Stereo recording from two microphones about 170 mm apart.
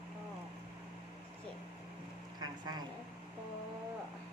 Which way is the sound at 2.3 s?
25° right (ahead or behind).